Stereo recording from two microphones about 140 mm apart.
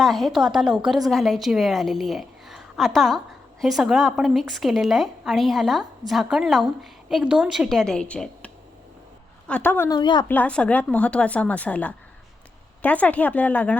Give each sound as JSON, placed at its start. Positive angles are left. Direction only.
{"t": 0.0, "sound": "a woman's voice", "side_deg": 0}
{"t": 9.5, "sound": "a woman's voice", "side_deg": 10}
{"t": 9.9, "sound": "speech", "side_deg": 30}
{"t": 10.2, "sound": "a woman's voice", "side_deg": 10}